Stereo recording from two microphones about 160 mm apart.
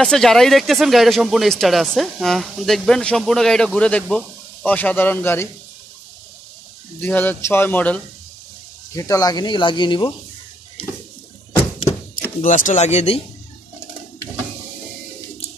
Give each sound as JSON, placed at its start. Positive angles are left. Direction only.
{"t": 0.0, "sound": "speech", "side_deg": 5}
{"t": 7.0, "sound": "speech", "side_deg": 10}
{"t": 8.9, "sound": "speech", "side_deg": 20}
{"t": 12.4, "sound": "speech", "side_deg": 55}